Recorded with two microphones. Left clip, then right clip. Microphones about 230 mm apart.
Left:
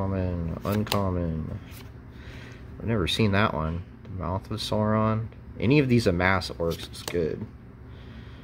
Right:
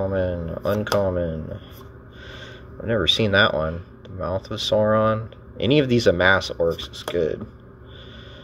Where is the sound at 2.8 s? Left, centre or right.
Left.